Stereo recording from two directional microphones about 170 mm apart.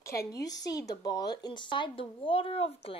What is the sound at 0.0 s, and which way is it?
A woman's voice, 20° left (ahead or behind).